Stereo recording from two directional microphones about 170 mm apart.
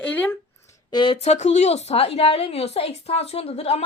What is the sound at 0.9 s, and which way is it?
A woman's voice, 30° left (ahead or behind).